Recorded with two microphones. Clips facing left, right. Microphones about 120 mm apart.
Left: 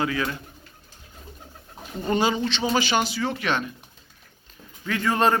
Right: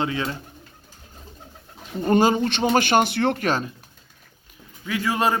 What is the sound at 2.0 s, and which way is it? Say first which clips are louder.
Speech: right 5 dB; 45° right (ahead or behind).